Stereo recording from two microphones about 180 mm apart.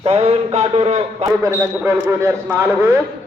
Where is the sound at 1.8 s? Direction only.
15° right (ahead or behind).